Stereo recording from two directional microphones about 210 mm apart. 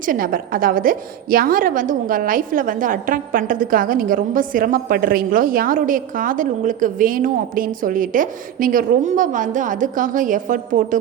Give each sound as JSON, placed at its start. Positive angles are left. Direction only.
{"t": 0.0, "sound": "a woman's voice", "side_deg": -40}